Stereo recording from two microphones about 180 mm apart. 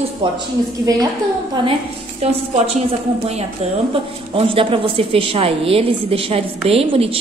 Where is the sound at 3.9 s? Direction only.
30° right (ahead or behind).